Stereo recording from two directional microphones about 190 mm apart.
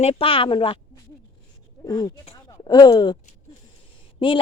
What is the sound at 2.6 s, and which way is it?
Speech, 20° left (ahead or behind).